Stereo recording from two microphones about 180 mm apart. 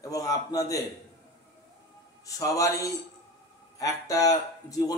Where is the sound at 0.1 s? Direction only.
20° left (ahead or behind).